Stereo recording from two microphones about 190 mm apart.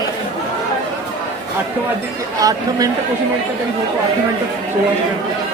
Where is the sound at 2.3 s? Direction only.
20° right (ahead or behind).